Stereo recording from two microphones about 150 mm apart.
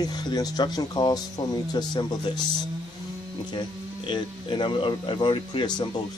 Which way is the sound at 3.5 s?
30° left (ahead or behind).